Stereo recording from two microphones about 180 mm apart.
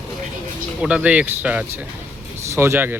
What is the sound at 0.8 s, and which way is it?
Speech, 5° right (ahead or behind).